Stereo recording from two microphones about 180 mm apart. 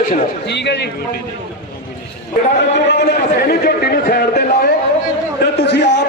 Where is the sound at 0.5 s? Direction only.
70° left (ahead or behind).